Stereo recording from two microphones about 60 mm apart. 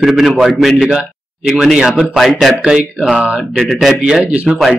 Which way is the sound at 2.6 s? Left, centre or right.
Centre.